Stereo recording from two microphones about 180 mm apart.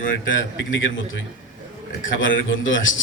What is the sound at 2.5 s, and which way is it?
Speech, 90° left.